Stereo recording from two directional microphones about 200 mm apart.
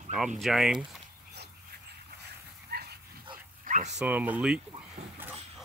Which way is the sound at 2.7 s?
55° right (ahead or behind).